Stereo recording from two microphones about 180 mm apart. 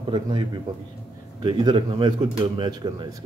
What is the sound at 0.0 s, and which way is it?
A man's voice, 30° right (ahead or behind).